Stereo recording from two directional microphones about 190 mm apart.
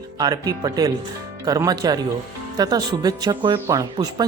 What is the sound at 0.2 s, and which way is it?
Speech, 20° right (ahead or behind).